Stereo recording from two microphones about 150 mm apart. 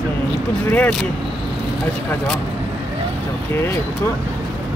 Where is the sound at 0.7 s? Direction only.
10° left (ahead or behind).